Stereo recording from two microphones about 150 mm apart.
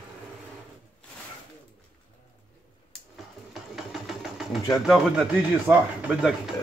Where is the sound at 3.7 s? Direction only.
Centre (ahead or behind).